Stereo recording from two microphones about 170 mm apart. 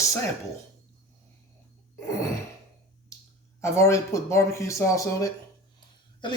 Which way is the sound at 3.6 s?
15° left (ahead or behind).